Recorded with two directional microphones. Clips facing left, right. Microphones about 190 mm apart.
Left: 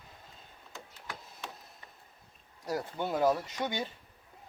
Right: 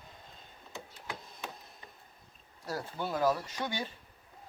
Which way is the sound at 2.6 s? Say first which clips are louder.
Left 3 dB; 20° left (ahead or behind).